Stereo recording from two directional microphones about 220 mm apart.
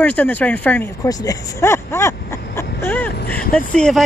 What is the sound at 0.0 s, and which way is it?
Speech, 5° left (ahead or behind).